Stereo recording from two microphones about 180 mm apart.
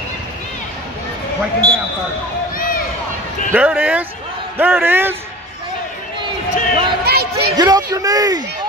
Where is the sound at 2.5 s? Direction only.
50° left (ahead or behind).